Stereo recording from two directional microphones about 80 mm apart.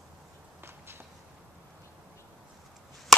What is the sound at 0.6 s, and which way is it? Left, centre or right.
Walk, right.